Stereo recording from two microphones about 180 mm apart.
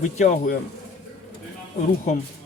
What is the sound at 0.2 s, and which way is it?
Speech, 45° left (ahead or behind).